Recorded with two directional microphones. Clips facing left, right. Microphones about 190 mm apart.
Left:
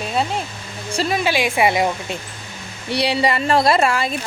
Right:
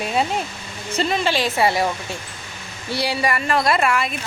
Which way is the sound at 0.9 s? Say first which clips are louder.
Left 1 dB; 5° left (ahead or behind).